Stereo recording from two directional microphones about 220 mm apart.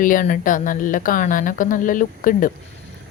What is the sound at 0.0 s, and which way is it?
Speech, 40° left (ahead or behind).